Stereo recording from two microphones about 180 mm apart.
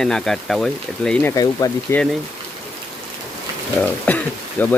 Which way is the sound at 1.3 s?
20° left (ahead or behind).